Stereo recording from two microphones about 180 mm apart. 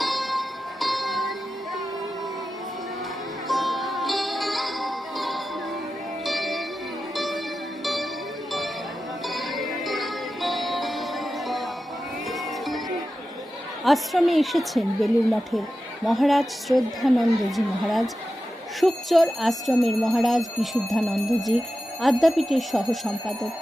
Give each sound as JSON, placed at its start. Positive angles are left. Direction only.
{"t": 0.0, "sound": "music", "side_deg": 0}
{"t": 3.4, "sound": "sitar", "side_deg": 0}
{"t": 6.2, "sound": "music", "side_deg": 0}
{"t": 7.8, "sound": "music", "side_deg": 0}
{"t": 9.3, "sound": "music", "side_deg": 0}
{"t": 13.8, "sound": "speech", "side_deg": 0}
{"t": 16.1, "sound": "speech", "side_deg": 0}